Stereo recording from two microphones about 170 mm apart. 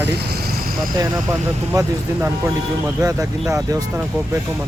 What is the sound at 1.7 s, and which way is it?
Speech, 15° right (ahead or behind).